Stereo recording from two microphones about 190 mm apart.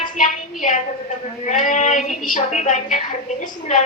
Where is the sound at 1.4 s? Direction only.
40° left (ahead or behind).